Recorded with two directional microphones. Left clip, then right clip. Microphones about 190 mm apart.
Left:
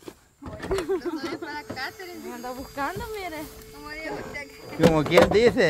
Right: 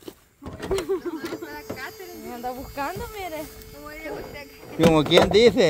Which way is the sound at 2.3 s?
45° right (ahead or behind).